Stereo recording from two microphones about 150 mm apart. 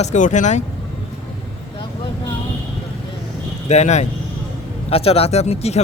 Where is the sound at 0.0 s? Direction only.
55° left (ahead or behind).